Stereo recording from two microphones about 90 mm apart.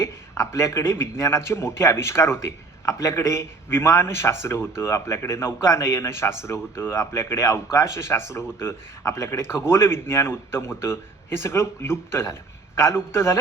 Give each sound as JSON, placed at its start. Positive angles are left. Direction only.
{"t": 0.0, "sound": "a man's voice", "side_deg": 30}